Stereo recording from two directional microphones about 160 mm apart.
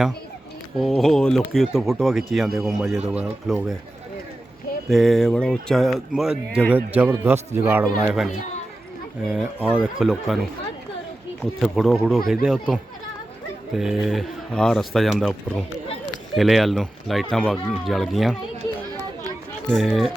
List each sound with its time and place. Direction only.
0.8 s speech: centre (ahead or behind)
4.9 s a man's voice: centre (ahead or behind)
11.6 s speech: centre (ahead or behind)
19.7 s speech: centre (ahead or behind)